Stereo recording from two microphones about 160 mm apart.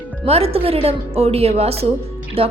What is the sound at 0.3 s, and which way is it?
A woman's voice, 40° right (ahead or behind).